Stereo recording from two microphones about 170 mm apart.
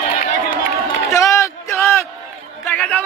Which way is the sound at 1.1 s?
15° left (ahead or behind).